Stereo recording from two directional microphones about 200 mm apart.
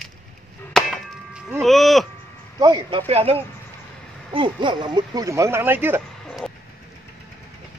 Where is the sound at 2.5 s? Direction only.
20° right (ahead or behind).